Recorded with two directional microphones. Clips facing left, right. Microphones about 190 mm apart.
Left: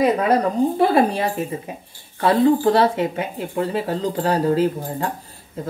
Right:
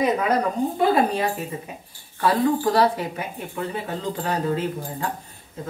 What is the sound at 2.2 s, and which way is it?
Speech, 25° left (ahead or behind).